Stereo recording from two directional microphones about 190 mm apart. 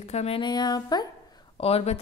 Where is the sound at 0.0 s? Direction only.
35° left (ahead or behind).